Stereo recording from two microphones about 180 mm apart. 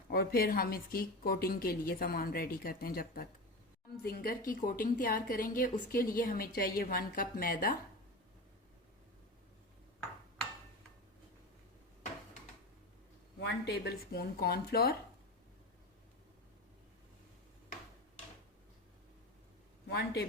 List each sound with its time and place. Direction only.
0.1 s a woman's voice: 55° left (ahead or behind)
13.4 s a woman's voice: 60° left (ahead or behind)
19.9 s a woman's voice: 60° left (ahead or behind)